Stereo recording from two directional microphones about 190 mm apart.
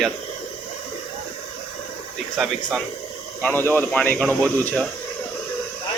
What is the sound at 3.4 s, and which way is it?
Speech, 10° left (ahead or behind).